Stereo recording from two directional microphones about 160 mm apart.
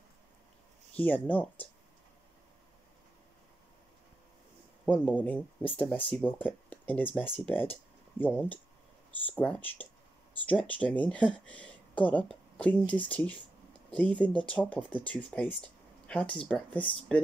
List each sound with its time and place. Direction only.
0.9 s speech: 10° left (ahead or behind)
4.8 s speech: 10° left (ahead or behind)